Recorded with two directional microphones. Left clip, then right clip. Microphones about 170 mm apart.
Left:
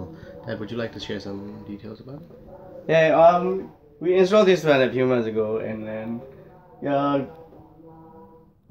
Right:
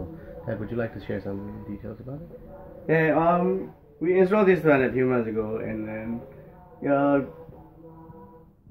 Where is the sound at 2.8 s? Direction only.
10° left (ahead or behind).